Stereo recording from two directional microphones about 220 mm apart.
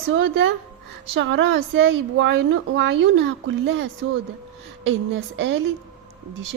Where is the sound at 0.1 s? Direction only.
55° right (ahead or behind).